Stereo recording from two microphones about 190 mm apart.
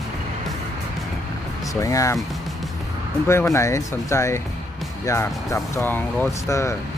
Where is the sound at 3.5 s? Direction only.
15° left (ahead or behind).